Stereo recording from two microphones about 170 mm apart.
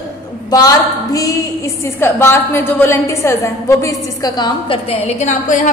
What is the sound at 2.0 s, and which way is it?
A woman's voice, 15° left (ahead or behind).